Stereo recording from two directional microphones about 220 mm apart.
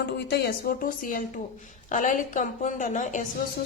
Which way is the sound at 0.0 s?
45° left (ahead or behind).